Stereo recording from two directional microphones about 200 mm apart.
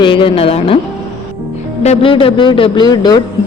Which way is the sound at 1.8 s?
30° left (ahead or behind).